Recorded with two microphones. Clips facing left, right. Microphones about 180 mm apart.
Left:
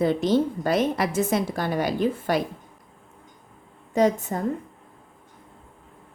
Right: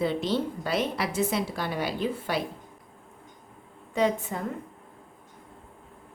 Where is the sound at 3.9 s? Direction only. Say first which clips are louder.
Left 5 dB; 40° left (ahead or behind).